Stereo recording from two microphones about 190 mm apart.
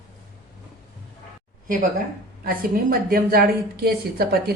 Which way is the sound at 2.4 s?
50° right (ahead or behind).